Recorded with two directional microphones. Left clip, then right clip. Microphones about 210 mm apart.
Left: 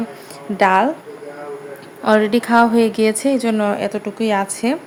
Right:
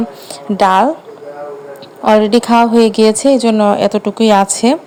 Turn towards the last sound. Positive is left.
turn(degrees=-30)  # may be behind; listen again after turning